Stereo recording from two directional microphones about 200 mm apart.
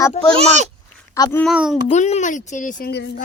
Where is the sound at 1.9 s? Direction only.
35° left (ahead or behind).